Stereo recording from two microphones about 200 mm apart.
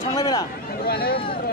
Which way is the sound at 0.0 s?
15° left (ahead or behind).